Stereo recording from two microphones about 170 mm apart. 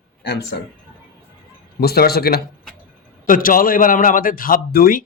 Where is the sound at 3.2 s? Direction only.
55° left (ahead or behind).